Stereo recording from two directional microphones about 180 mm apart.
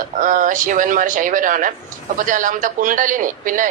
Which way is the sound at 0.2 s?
45° right (ahead or behind).